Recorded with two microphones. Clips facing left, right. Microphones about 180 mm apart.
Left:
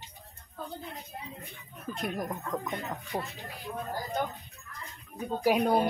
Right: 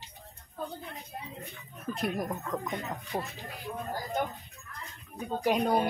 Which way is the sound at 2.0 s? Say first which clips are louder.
Right 2 dB; 5° right (ahead or behind).